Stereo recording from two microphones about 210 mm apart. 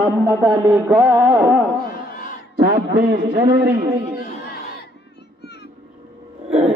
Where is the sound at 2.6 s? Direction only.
45° right (ahead or behind).